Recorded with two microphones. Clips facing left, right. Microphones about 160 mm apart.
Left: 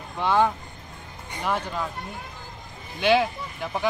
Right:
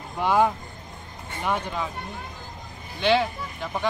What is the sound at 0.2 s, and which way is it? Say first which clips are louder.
Speech: right 1 dB; 10° right (ahead or behind).